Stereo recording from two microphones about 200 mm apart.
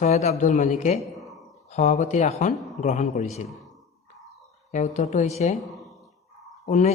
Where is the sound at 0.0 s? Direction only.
35° left (ahead or behind).